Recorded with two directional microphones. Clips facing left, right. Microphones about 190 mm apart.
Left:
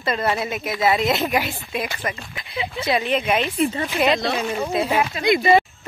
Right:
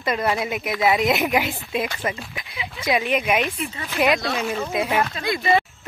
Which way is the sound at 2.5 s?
30° left (ahead or behind).